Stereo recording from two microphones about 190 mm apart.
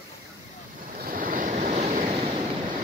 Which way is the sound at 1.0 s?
45° right (ahead or behind).